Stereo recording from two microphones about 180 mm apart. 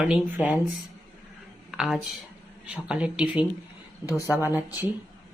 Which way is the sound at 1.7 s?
Centre (ahead or behind).